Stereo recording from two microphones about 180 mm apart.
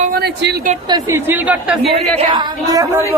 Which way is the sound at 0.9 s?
15° right (ahead or behind).